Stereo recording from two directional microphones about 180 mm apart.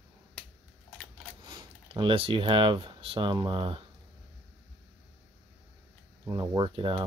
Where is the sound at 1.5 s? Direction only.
25° right (ahead or behind).